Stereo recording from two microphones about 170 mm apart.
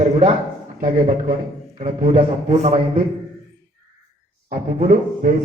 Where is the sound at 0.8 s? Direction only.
50° right (ahead or behind).